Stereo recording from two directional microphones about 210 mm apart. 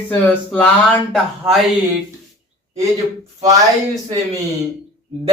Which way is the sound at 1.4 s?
10° right (ahead or behind).